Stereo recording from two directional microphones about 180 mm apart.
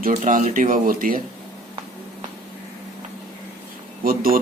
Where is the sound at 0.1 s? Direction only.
45° right (ahead or behind).